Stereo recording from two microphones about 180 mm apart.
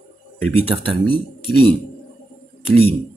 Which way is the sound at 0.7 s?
25° right (ahead or behind).